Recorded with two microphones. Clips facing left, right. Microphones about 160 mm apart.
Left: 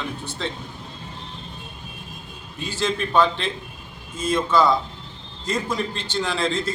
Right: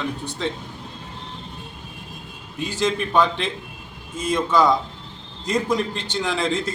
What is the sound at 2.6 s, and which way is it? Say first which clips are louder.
A man's voice: right 2 dB; 15° right (ahead or behind).